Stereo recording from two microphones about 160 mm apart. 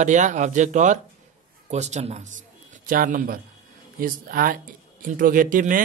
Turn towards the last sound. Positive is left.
turn(degrees=-55)  # may be behind; listen again after turning